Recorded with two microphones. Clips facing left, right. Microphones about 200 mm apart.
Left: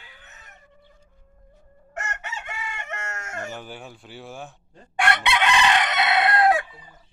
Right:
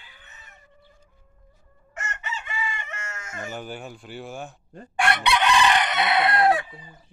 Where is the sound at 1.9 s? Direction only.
70° left (ahead or behind).